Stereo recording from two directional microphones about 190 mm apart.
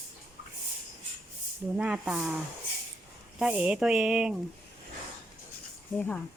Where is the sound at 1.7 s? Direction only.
5° right (ahead or behind).